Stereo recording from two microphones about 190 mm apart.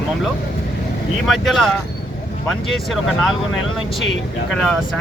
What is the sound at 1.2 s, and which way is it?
Speech, centre (ahead or behind).